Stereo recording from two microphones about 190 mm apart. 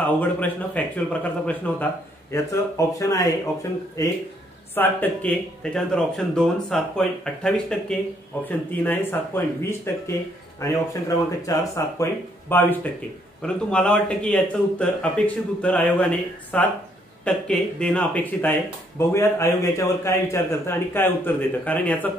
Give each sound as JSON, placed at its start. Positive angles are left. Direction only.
{"t": 0.0, "sound": "speech", "side_deg": 10}
{"t": 4.7, "sound": "speech", "side_deg": 10}
{"t": 11.4, "sound": "speech", "side_deg": 15}